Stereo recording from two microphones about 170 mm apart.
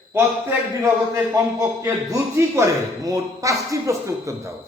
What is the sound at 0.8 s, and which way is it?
A man's voice, 15° right (ahead or behind).